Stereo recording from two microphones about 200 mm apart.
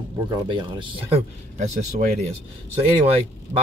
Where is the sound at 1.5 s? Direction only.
40° right (ahead or behind).